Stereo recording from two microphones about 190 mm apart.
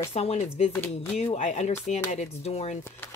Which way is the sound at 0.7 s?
10° left (ahead or behind).